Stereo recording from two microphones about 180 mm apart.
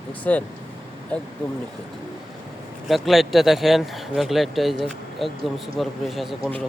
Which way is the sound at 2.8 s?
Centre (ahead or behind).